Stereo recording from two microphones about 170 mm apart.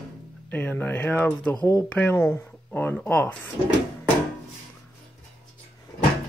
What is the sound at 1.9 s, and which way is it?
Speech, 10° left (ahead or behind).